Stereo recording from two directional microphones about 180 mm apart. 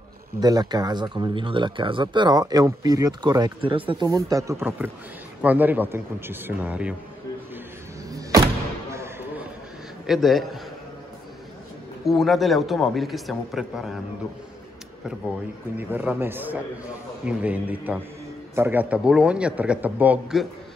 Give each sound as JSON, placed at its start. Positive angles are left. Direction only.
{"t": 0.4, "sound": "a man's voice", "side_deg": -20}
{"t": 8.9, "sound": "a sound", "side_deg": -15}
{"t": 10.0, "sound": "a man's voice", "side_deg": 0}
{"t": 12.1, "sound": "a man's voice", "side_deg": 0}
{"t": 15.9, "sound": "a man's voice", "side_deg": -10}